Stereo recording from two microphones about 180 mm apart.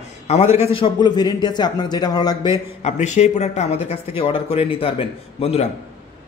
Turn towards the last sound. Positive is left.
turn(degrees=35)  # may be behind; listen again after turning